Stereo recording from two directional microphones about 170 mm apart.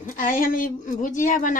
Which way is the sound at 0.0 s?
50° left (ahead or behind).